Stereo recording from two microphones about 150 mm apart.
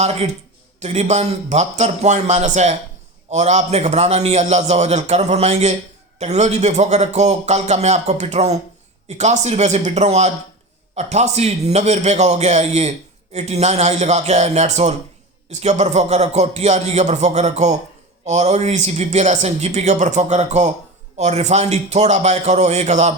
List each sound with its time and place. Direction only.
0.0 s a man's voice: 45° right (ahead or behind)